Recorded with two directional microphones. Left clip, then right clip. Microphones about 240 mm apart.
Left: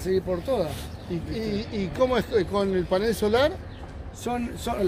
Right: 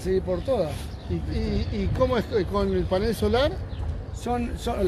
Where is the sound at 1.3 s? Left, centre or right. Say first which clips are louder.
Left 1 dB; centre.